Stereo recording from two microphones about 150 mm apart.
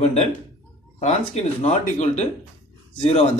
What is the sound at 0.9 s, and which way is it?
Speech, 45° left (ahead or behind).